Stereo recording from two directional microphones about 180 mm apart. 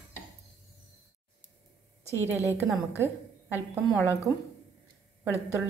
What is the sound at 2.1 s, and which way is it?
Speech, 15° left (ahead or behind).